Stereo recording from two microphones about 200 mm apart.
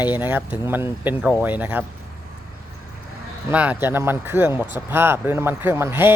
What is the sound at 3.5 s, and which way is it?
Speech, 5° right (ahead or behind).